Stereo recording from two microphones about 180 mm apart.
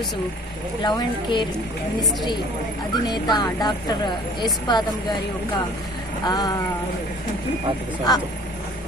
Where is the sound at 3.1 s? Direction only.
25° left (ahead or behind).